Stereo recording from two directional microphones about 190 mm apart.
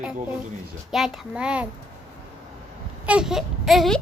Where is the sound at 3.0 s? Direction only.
5° right (ahead or behind).